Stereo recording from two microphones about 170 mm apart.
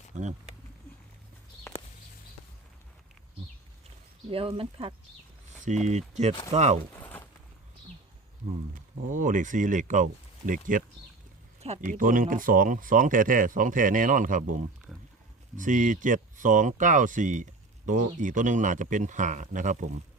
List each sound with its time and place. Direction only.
0.1 s speech: 45° right (ahead or behind)
4.3 s speech: 35° right (ahead or behind)
5.6 s speech: 45° right (ahead or behind)
7.0 s a sound: 10° left (ahead or behind)
9.0 s speech: 50° right (ahead or behind)
11.9 s speech: 55° right (ahead or behind)